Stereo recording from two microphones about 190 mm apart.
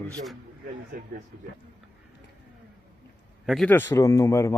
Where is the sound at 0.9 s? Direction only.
50° right (ahead or behind).